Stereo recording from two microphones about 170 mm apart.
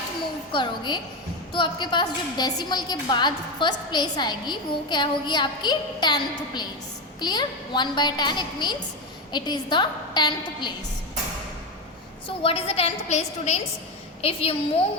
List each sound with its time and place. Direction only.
0.5 s a woman's voice: 30° left (ahead or behind)
12.4 s a woman's voice: 35° left (ahead or behind)